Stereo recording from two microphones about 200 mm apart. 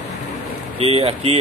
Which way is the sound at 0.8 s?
30° right (ahead or behind).